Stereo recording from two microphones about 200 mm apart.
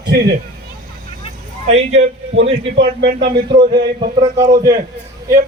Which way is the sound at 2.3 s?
60° right (ahead or behind).